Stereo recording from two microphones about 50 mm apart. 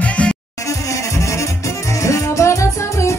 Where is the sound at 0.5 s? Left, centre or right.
Left.